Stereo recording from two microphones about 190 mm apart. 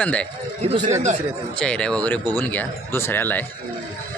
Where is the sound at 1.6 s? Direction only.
5° left (ahead or behind).